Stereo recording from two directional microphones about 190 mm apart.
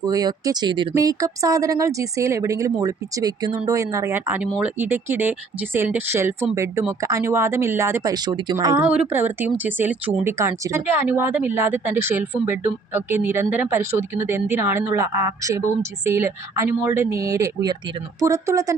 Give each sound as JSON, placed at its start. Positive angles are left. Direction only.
{"t": 0.0, "sound": "speech", "side_deg": -20}